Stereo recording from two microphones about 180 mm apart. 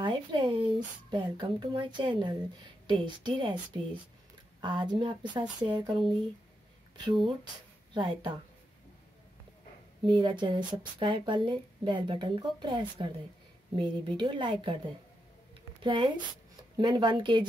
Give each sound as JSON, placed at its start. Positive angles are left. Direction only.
{"t": 0.0, "sound": "a woman's voice", "side_deg": -25}
{"t": 4.6, "sound": "a woman's voice", "side_deg": -25}
{"t": 7.1, "sound": "a woman's voice", "side_deg": -25}
{"t": 10.0, "sound": "a woman's voice", "side_deg": -25}
{"t": 15.8, "sound": "a woman's voice", "side_deg": -25}